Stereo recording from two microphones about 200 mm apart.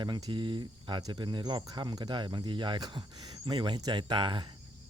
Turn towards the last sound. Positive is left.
turn(degrees=-25)  # may be behind; listen again after turning